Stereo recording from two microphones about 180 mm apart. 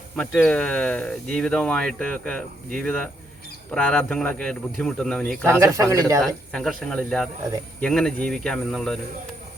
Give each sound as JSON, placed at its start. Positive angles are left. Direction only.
{"t": 0.2, "sound": "speech", "side_deg": 5}
{"t": 5.5, "sound": "speech", "side_deg": -15}
{"t": 6.2, "sound": "speech", "side_deg": 5}